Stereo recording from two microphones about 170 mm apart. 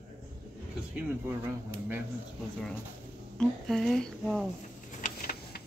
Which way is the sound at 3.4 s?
Centre (ahead or behind).